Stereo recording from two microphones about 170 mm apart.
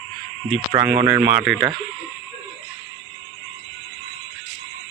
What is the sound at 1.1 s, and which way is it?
Speech, 5° right (ahead or behind).